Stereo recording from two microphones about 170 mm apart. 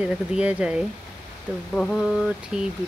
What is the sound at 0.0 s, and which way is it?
Speech, 5° right (ahead or behind).